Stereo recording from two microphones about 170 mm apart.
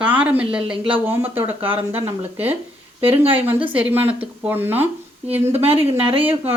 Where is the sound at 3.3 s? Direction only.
10° right (ahead or behind).